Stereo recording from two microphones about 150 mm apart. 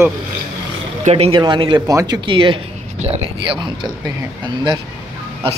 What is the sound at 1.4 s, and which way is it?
Speech, 30° right (ahead or behind).